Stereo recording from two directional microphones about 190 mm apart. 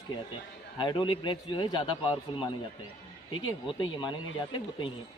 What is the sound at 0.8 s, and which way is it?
A man's voice, 25° left (ahead or behind).